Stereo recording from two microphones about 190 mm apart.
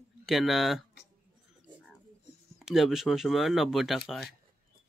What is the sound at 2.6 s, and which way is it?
Speech, centre (ahead or behind).